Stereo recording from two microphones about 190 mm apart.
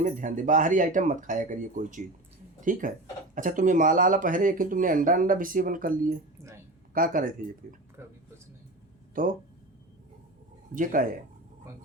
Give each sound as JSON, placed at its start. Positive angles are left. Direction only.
{"t": 0.0, "sound": "speech", "side_deg": -45}
{"t": 10.8, "sound": "speech", "side_deg": -45}